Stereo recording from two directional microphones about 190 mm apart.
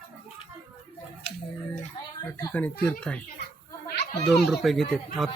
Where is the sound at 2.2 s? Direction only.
10° left (ahead or behind).